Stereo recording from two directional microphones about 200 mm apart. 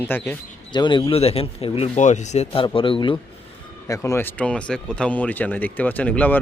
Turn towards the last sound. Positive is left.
turn(degrees=5)  # may be behind; listen again after turning